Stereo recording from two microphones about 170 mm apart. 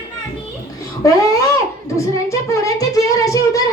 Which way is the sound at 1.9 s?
20° left (ahead or behind).